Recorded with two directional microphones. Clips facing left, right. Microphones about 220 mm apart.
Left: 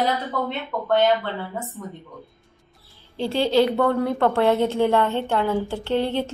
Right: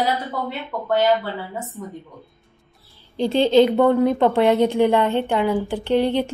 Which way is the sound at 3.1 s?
20° right (ahead or behind).